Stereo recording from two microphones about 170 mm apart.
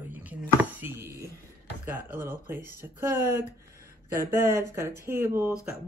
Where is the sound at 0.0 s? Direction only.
10° right (ahead or behind).